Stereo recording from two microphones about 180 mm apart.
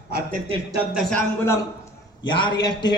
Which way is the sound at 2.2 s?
25° left (ahead or behind).